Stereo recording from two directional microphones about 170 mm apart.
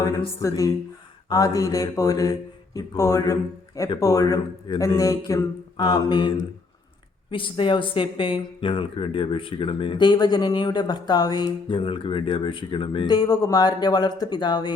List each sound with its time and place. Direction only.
0.4 s speech: 20° left (ahead or behind)